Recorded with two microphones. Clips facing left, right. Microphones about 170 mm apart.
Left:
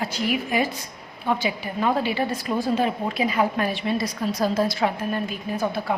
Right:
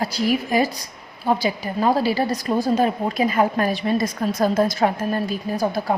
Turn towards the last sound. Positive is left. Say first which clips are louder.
# right 3 dB
turn(degrees=-40)  # may be behind; listen again after turning